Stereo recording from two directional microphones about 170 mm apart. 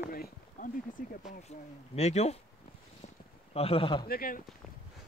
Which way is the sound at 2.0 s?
40° left (ahead or behind).